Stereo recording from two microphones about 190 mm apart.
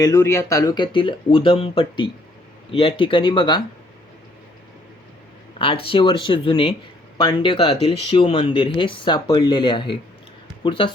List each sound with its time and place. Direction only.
0.0 s speech: 15° left (ahead or behind)
5.5 s speech: 30° left (ahead or behind)